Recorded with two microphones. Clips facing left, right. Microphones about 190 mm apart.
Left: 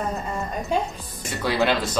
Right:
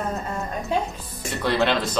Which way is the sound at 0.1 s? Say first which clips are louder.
Even; centre (ahead or behind).